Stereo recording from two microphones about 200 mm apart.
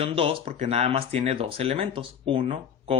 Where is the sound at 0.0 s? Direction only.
25° right (ahead or behind).